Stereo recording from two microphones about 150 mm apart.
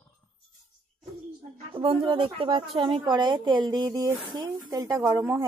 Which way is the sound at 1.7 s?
35° right (ahead or behind).